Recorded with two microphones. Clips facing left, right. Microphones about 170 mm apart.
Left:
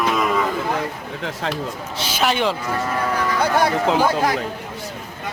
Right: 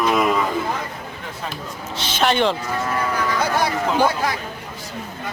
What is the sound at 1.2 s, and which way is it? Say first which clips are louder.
Speech: left 7 dB; 85° left.